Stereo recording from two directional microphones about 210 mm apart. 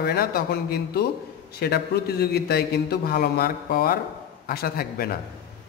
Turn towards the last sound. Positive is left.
turn(degrees=45)  # may be behind; listen again after turning